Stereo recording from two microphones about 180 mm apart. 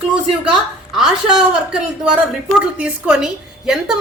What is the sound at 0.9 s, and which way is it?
Speech, 5° right (ahead or behind).